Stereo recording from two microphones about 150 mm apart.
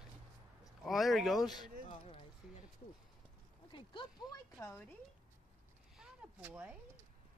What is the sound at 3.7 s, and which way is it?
Speech, 35° left (ahead or behind).